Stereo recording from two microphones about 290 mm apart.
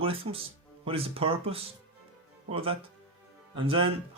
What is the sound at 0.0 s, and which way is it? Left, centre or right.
Speech, centre.